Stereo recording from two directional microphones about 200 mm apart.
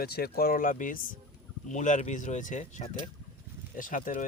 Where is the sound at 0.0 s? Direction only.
50° left (ahead or behind).